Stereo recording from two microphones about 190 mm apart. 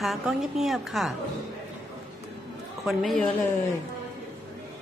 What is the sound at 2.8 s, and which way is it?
Speech, centre (ahead or behind).